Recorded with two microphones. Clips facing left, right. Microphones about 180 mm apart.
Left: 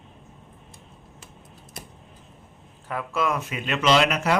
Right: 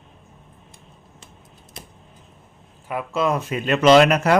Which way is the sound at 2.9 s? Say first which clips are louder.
Right 4 dB; 20° right (ahead or behind).